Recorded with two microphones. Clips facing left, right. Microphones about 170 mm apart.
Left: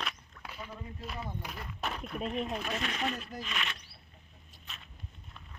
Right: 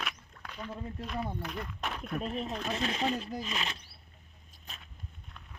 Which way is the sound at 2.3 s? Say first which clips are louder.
Left 3 dB; 35° right (ahead or behind).